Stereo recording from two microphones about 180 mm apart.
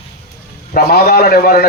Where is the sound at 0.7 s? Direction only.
55° left (ahead or behind).